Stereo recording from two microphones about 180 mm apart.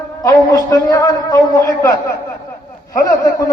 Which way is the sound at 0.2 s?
20° left (ahead or behind).